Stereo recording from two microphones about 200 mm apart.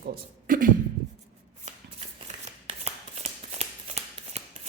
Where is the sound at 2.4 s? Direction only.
30° right (ahead or behind).